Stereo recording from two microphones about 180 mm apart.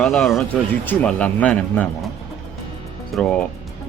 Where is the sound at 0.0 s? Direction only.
Centre (ahead or behind).